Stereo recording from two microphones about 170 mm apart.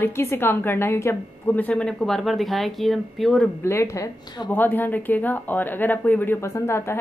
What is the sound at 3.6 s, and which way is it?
Speech, 15° left (ahead or behind).